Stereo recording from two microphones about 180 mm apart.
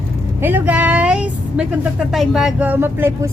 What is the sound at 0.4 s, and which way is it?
Speech, 10° right (ahead or behind).